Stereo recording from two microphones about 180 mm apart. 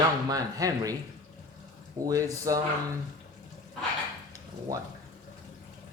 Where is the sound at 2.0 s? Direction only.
20° right (ahead or behind).